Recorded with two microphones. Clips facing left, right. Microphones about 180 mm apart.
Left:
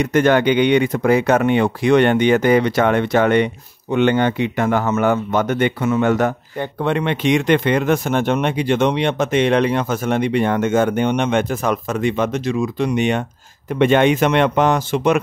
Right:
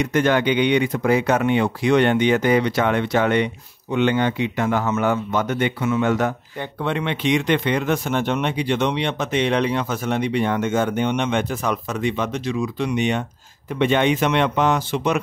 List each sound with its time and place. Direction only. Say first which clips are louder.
0.0 s speech: left 4 dB; 50° left (ahead or behind)